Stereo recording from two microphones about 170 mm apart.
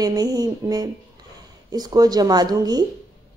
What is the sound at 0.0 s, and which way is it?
A woman's voice, 25° right (ahead or behind).